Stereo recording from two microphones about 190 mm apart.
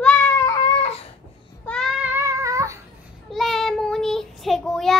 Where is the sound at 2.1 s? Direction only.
15° right (ahead or behind).